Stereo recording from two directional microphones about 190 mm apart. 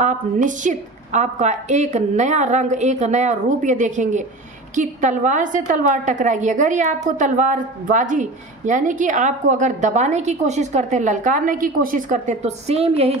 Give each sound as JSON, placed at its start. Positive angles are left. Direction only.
{"t": 0.0, "sound": "a woman's voice", "side_deg": -40}